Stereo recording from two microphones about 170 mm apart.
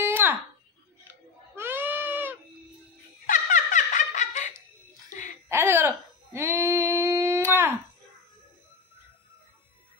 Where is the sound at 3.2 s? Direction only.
50° left (ahead or behind).